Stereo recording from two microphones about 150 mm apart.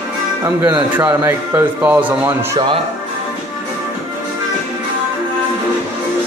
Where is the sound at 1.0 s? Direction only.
20° right (ahead or behind).